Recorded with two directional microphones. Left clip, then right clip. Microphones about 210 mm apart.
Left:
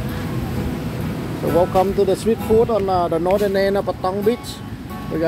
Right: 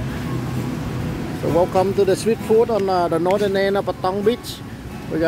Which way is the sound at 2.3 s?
10° right (ahead or behind).